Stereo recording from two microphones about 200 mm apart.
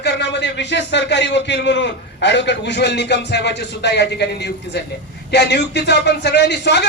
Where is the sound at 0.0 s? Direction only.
60° left (ahead or behind).